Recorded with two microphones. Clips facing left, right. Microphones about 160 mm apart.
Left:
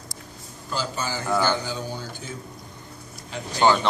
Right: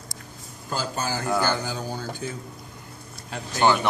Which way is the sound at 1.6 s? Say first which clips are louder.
Even; 50° right (ahead or behind).